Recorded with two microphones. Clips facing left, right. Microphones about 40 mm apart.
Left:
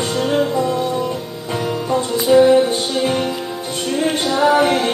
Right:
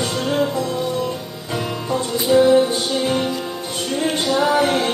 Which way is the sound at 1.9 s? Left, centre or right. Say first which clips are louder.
Left 3 dB; centre.